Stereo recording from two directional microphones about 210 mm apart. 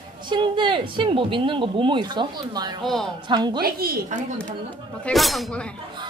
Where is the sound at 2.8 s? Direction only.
Centre (ahead or behind).